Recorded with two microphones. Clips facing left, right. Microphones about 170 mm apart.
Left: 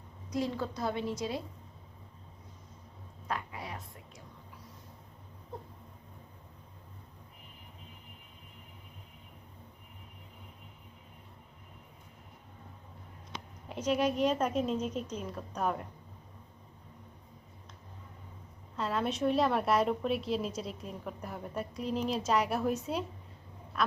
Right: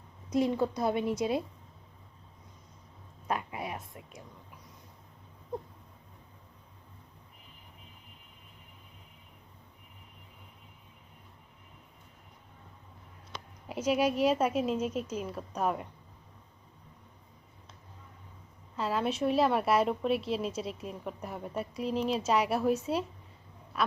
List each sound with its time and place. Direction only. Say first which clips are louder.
0.3 s a woman's voice: right 6 dB; 20° right (ahead or behind)
3.2 s a woman's voice: right 4 dB; 20° right (ahead or behind)
13.7 s a woman's voice: right 2 dB; 10° right (ahead or behind)
18.8 s a woman's voice: right 1 dB; centre (ahead or behind)